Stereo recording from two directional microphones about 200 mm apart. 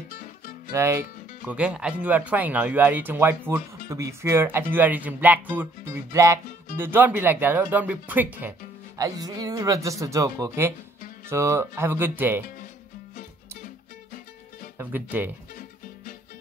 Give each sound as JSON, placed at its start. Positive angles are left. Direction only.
{"t": 0.1, "sound": "music", "side_deg": 45}
{"t": 0.7, "sound": "speech", "side_deg": -15}
{"t": 13.1, "sound": "music", "side_deg": 45}
{"t": 14.8, "sound": "speech", "side_deg": -10}